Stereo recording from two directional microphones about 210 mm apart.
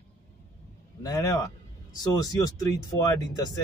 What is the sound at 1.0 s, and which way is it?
Speech, 15° left (ahead or behind).